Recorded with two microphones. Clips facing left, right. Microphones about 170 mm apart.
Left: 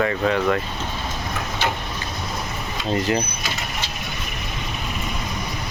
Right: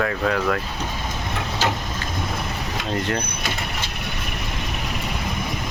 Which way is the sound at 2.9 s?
5° left (ahead or behind).